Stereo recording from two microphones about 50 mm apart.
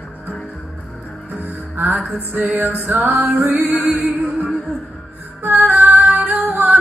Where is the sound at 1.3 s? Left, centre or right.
Right.